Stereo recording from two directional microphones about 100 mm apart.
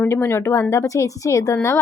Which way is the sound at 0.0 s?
25° left (ahead or behind).